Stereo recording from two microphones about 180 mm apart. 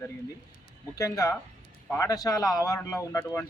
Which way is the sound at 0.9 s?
20° left (ahead or behind).